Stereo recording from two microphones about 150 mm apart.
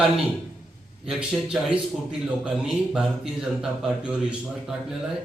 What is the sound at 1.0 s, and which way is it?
A man's voice, 5° right (ahead or behind).